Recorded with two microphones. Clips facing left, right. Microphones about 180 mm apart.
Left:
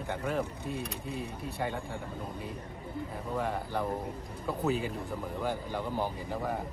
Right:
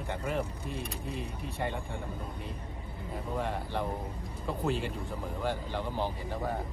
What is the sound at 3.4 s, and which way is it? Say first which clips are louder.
Speech: left 2 dB; 5° left (ahead or behind).